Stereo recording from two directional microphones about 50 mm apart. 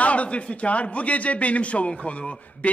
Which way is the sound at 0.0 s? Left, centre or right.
Left.